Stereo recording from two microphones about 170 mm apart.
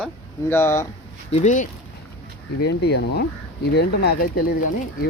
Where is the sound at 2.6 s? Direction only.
75° left (ahead or behind).